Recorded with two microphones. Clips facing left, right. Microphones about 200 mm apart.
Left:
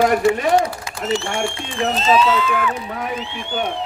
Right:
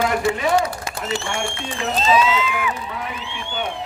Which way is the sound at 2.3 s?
10° right (ahead or behind).